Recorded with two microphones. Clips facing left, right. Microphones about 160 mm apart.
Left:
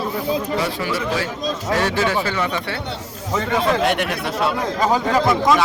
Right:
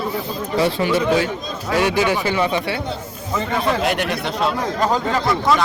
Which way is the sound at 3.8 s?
Centre (ahead or behind).